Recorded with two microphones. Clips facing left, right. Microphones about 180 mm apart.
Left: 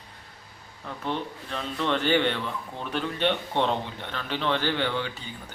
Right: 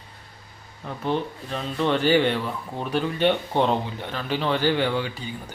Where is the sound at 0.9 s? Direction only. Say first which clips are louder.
Right 5 dB; 35° right (ahead or behind).